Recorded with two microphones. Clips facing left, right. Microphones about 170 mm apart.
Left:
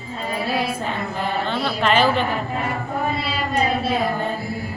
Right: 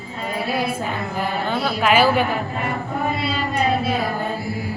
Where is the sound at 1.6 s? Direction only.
5° right (ahead or behind).